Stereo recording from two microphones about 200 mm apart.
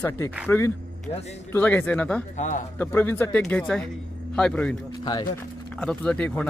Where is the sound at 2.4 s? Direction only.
35° left (ahead or behind).